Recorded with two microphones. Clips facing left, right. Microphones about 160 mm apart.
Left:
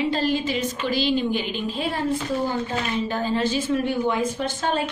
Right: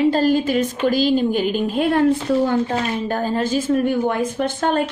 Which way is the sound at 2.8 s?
45° right (ahead or behind).